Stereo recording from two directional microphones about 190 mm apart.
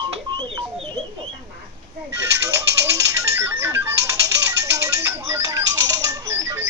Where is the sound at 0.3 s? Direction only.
20° right (ahead or behind).